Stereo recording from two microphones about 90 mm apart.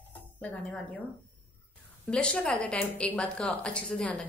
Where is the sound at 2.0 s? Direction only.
10° left (ahead or behind).